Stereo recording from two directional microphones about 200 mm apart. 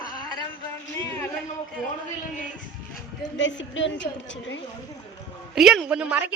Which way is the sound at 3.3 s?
65° left (ahead or behind).